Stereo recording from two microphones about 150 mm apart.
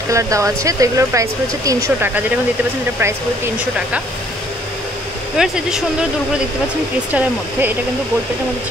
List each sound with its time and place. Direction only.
0.1 s speech: 20° right (ahead or behind)
5.4 s speech: 5° right (ahead or behind)
7.1 s speech: 10° right (ahead or behind)